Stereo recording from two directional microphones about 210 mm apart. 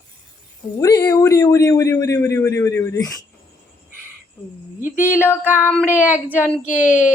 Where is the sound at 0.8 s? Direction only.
20° left (ahead or behind).